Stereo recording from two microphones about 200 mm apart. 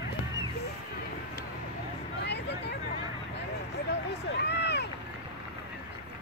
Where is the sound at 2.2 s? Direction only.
60° left (ahead or behind).